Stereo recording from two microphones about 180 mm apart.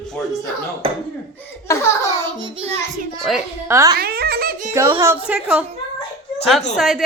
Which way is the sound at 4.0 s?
60° right (ahead or behind).